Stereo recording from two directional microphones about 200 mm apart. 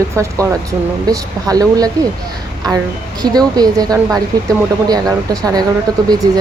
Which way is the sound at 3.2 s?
20° right (ahead or behind).